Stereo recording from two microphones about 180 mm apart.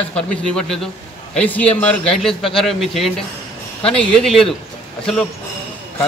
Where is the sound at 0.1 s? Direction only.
5° left (ahead or behind).